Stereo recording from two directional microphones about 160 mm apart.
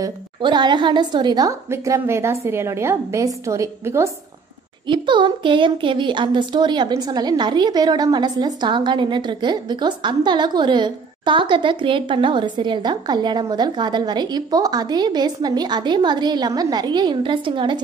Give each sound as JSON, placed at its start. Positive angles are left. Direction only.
{"t": 0.0, "sound": "speech", "side_deg": -30}
{"t": 4.8, "sound": "speech", "side_deg": -30}